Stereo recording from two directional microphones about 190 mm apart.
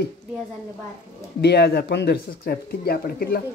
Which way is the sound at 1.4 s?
60° left (ahead or behind).